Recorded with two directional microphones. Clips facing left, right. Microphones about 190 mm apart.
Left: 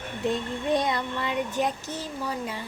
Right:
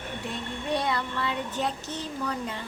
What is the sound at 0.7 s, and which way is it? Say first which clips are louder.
Speech: left 3 dB; 20° left (ahead or behind).